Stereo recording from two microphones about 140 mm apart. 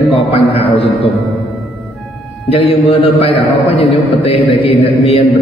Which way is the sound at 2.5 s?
40° left (ahead or behind).